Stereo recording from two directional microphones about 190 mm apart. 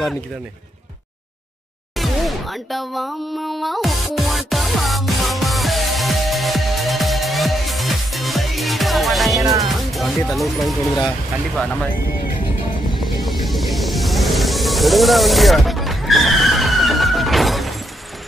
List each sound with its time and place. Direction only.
2.0 s music: centre (ahead or behind)
9.4 s speech: 20° right (ahead or behind)
9.7 s speech: centre (ahead or behind)
12.9 s music: centre (ahead or behind)